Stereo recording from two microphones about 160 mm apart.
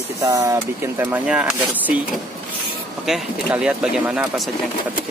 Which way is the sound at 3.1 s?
5° right (ahead or behind).